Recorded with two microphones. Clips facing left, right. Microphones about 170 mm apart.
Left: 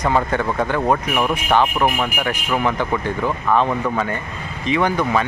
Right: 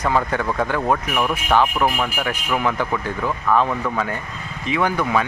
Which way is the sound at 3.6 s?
10° left (ahead or behind).